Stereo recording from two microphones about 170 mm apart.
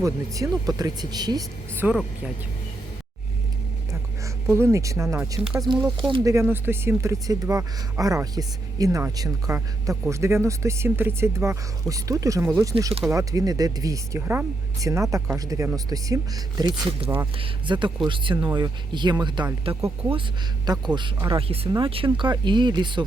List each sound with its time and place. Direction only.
0.0 s speech: 20° right (ahead or behind)
1.7 s speech: 15° right (ahead or behind)
4.4 s speech: 15° right (ahead or behind)
6.2 s speech: 15° right (ahead or behind)